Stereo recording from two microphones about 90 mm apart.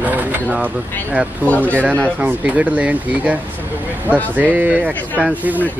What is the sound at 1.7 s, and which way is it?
Speech, 20° right (ahead or behind).